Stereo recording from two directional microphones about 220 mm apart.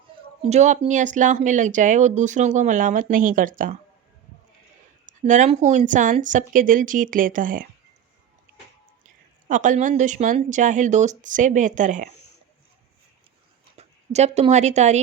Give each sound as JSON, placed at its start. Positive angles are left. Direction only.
{"t": 0.4, "sound": "speech", "side_deg": -30}
{"t": 5.0, "sound": "speech", "side_deg": -35}
{"t": 9.5, "sound": "speech", "side_deg": -35}
{"t": 13.7, "sound": "speech", "side_deg": -30}